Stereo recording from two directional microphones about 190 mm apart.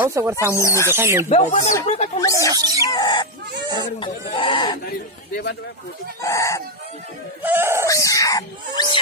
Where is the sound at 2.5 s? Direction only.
20° right (ahead or behind).